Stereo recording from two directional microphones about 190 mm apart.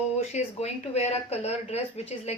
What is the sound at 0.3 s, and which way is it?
A woman's voice, 35° left (ahead or behind).